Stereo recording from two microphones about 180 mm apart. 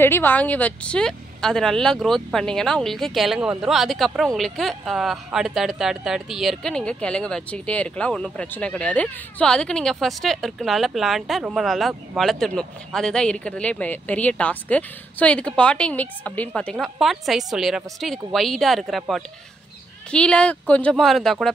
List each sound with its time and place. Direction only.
0.0 s a woman's voice: 10° left (ahead or behind)